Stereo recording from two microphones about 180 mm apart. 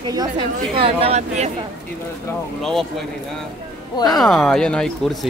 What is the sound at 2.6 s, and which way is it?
Speech, centre (ahead or behind).